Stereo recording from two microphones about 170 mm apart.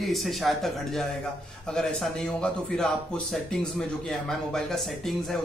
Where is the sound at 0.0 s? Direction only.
Centre (ahead or behind).